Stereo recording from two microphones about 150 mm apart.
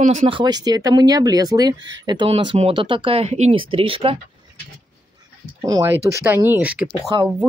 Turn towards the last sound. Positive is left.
turn(degrees=-30)  # may be behind; listen again after turning